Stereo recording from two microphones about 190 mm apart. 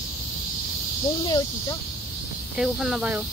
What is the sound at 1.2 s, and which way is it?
Speech, 20° left (ahead or behind).